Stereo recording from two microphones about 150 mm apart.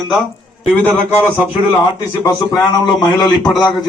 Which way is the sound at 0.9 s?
15° right (ahead or behind).